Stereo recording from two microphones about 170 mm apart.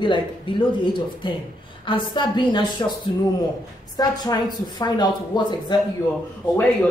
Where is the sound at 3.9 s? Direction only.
25° left (ahead or behind).